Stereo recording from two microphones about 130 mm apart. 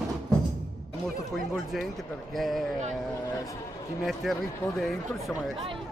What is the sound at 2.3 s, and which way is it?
Speech, centre (ahead or behind).